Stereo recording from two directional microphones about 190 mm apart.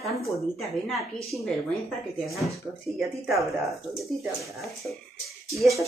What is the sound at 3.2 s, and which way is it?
Speech, centre (ahead or behind).